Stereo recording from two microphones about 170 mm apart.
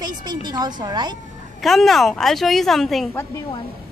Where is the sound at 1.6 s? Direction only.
Centre (ahead or behind).